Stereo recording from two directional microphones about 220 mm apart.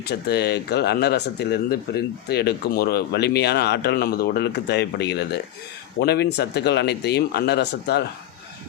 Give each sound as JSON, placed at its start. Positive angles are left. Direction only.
{"t": 0.0, "sound": "speech", "side_deg": 45}